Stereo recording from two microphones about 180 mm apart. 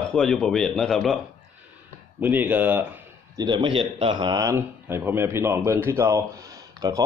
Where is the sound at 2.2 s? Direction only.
10° right (ahead or behind).